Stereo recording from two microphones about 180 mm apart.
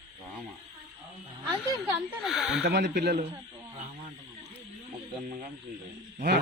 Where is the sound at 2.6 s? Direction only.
70° right (ahead or behind).